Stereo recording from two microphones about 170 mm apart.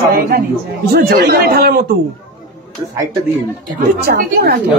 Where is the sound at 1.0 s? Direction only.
65° right (ahead or behind).